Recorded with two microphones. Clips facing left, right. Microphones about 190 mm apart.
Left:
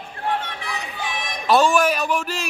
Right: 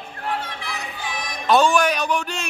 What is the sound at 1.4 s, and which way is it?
A man's voice, centre (ahead or behind).